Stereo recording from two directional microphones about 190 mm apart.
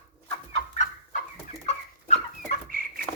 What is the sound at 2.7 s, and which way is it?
Chicken, 50° right (ahead or behind).